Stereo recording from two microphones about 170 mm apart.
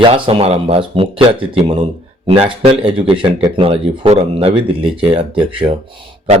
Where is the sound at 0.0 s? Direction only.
35° right (ahead or behind).